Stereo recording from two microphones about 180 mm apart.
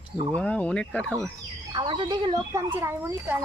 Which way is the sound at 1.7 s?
25° right (ahead or behind).